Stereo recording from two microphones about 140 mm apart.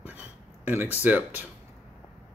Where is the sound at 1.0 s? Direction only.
10° right (ahead or behind).